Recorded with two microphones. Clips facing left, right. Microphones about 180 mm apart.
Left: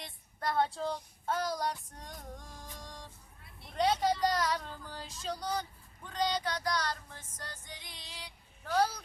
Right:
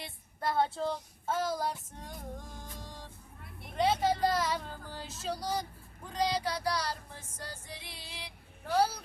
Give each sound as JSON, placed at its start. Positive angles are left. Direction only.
{"t": 0.0, "sound": "child singing", "side_deg": -5}
{"t": 6.1, "sound": "a sound", "side_deg": -10}
{"t": 6.7, "sound": "female singing", "side_deg": -10}